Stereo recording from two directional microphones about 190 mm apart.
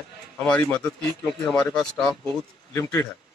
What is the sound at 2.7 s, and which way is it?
Speech, 15° left (ahead or behind).